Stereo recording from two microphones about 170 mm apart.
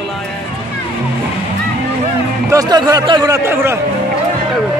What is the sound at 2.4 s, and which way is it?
A man's voice, 20° right (ahead or behind).